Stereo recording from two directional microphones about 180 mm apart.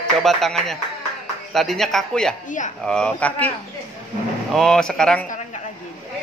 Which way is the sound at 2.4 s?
45° left (ahead or behind).